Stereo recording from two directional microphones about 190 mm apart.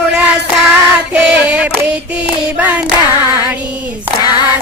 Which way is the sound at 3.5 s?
5° right (ahead or behind).